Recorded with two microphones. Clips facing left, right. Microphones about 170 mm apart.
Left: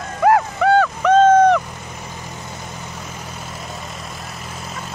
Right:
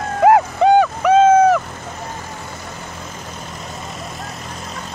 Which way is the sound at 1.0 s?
5° right (ahead or behind).